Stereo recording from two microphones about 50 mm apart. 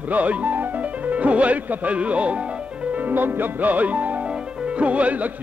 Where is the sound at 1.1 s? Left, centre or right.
Right.